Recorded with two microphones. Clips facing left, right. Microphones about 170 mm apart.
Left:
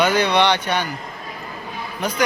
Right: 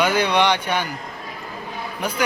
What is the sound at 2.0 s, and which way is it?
Speech, 10° right (ahead or behind).